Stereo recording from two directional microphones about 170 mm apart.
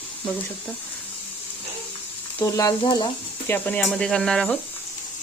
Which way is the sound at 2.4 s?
20° left (ahead or behind).